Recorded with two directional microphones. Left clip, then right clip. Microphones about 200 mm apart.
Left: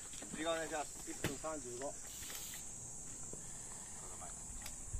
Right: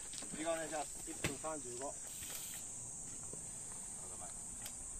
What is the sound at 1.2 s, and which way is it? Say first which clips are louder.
Speech: even; 50° left (ahead or behind).